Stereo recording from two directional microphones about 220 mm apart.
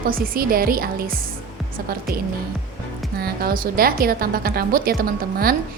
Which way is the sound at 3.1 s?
45° right (ahead or behind).